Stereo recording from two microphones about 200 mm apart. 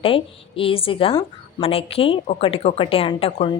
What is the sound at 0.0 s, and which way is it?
A woman's voice, 25° left (ahead or behind).